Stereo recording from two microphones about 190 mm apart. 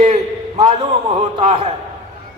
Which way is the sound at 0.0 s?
35° right (ahead or behind).